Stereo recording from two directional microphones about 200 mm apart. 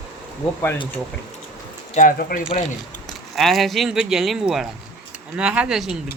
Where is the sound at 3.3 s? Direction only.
Centre (ahead or behind).